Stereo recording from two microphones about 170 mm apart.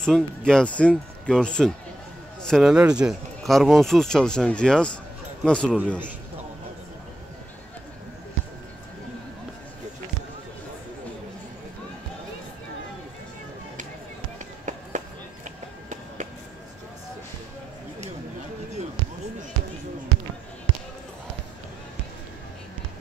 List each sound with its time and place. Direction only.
0.0 s speech: 5° left (ahead or behind)
14.7 s run: 45° right (ahead or behind)